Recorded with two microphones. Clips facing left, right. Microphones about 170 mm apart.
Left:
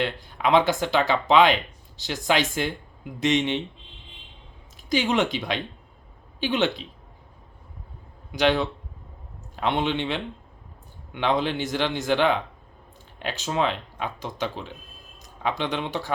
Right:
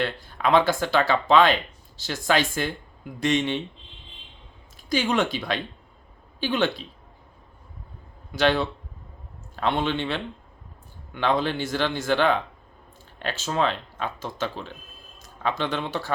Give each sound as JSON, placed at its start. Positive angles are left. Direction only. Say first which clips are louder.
{"t": 0.0, "sound": "speech", "louder": "even", "side_deg": 15}
{"t": 4.8, "sound": "speech", "louder": "left 1 dB", "side_deg": 20}
{"t": 8.3, "sound": "speech", "louder": "even", "side_deg": 15}